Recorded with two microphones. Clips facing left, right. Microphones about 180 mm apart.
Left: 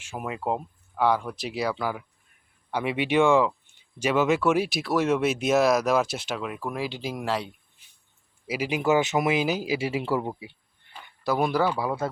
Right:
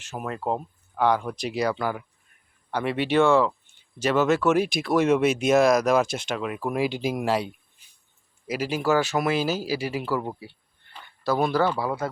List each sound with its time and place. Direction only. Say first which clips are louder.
0.0 s speech: right 1 dB; 10° left (ahead or behind)
6.6 s speech: right 5 dB; 15° right (ahead or behind)
8.4 s speech: even; 15° left (ahead or behind)
10.2 s speech: left 1 dB; 15° left (ahead or behind)